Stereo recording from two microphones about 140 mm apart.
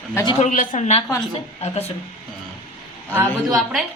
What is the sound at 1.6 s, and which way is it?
Speech, 45° left (ahead or behind).